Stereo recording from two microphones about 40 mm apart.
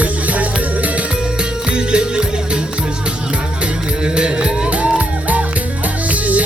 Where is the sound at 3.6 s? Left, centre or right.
Right.